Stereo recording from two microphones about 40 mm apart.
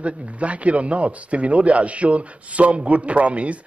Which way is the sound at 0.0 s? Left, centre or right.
Right.